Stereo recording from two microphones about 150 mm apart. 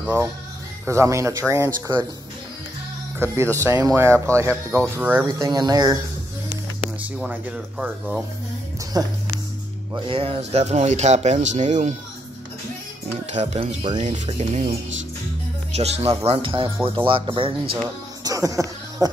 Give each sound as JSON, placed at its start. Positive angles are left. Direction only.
{"t": 0.0, "sound": "speech", "side_deg": -15}
{"t": 3.2, "sound": "speech", "side_deg": -15}
{"t": 7.2, "sound": "speech", "side_deg": -10}
{"t": 9.0, "sound": "speech", "side_deg": -25}
{"t": 10.0, "sound": "speech", "side_deg": -35}
{"t": 13.3, "sound": "speech", "side_deg": -50}
{"t": 18.2, "sound": "a sound", "side_deg": -25}